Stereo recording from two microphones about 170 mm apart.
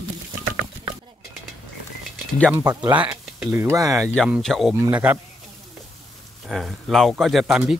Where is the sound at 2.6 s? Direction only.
25° right (ahead or behind).